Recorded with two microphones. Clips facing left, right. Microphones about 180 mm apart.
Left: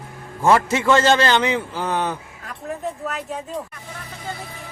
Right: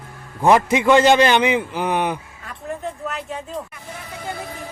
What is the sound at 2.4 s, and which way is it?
Speech, centre (ahead or behind).